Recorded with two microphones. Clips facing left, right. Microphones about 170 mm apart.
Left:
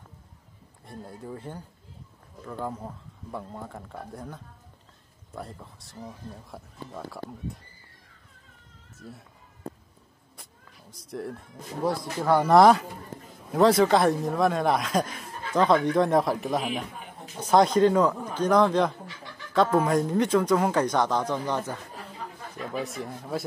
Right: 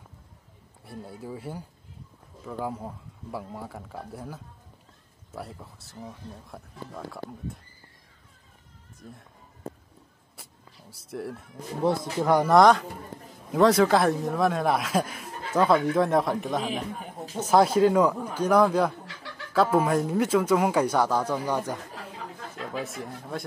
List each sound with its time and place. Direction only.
0.8 s speech: 5° right (ahead or behind)
10.3 s a sound: 5° right (ahead or behind)
11.8 s speech: 20° right (ahead or behind)
12.4 s speech: 5° left (ahead or behind)
19.0 s chicken: 80° right
19.5 s speech: 5° right (ahead or behind)
22.8 s speech: centre (ahead or behind)